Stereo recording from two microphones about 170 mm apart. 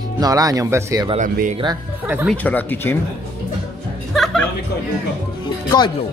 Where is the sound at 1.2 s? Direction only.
50° right (ahead or behind).